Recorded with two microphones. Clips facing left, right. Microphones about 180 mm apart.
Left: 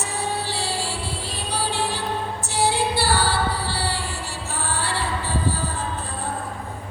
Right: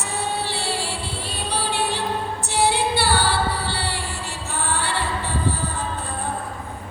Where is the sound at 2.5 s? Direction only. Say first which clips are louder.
Right 1 dB; 60° right (ahead or behind).